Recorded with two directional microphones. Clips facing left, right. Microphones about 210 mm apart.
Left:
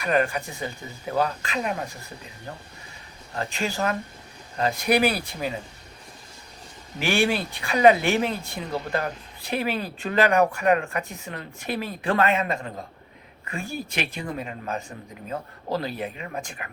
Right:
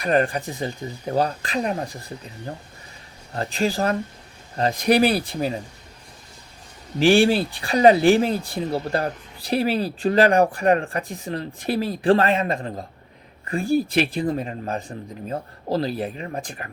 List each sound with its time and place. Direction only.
0.0 s speech: 35° right (ahead or behind)
3.3 s speech: 35° right (ahead or behind)
7.0 s speech: 35° right (ahead or behind)